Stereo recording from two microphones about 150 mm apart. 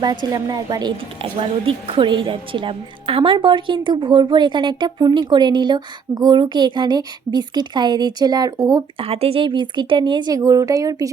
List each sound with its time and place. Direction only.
0.0 s a woman's voice: 25° right (ahead or behind)
9.0 s speech: 40° right (ahead or behind); by 11.1 s 25° right (ahead or behind)